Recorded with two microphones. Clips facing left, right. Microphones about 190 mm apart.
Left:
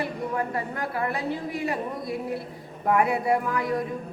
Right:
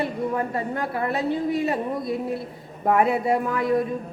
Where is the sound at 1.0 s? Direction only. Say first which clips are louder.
Right 8 dB; 25° right (ahead or behind).